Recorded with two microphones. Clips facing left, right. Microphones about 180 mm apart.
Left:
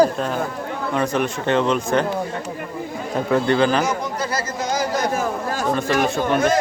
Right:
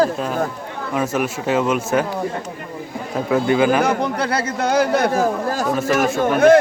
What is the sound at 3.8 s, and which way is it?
Speech, 60° right (ahead or behind).